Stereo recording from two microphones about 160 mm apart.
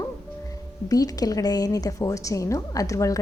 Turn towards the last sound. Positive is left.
turn(degrees=20)  # may be behind; listen again after turning